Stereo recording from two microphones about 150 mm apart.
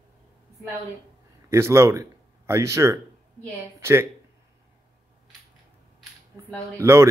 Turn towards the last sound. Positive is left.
turn(degrees=-20)  # may be behind; listen again after turning